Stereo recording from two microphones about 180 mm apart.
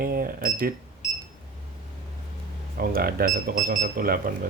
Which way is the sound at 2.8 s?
55° right (ahead or behind).